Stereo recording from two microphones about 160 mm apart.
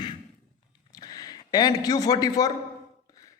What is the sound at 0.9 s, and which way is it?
A man's voice, 25° left (ahead or behind).